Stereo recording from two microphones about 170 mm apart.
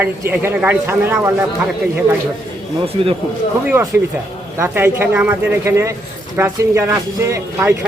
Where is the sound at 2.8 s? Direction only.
35° right (ahead or behind).